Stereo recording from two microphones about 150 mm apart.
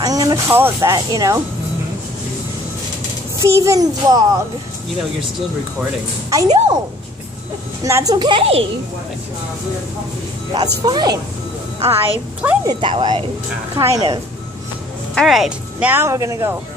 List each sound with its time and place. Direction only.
0.0 s music: 25° right (ahead or behind)
0.7 s a child's voice: 25° right (ahead or behind)
3.3 s a child's voice: 20° right (ahead or behind)
6.3 s a child's voice: 25° right (ahead or behind)
7.8 s a child's voice: 25° right (ahead or behind); by 8.6 s 40° right (ahead or behind)
10.8 s a child's voice: 25° right (ahead or behind)
11.9 s a woman's voice: 10° right (ahead or behind)
12.6 s speech: 30° right (ahead or behind)
13.7 s a child's voice: 20° right (ahead or behind)
15.1 s speech: centre (ahead or behind)
15.9 s a child's voice: 20° right (ahead or behind)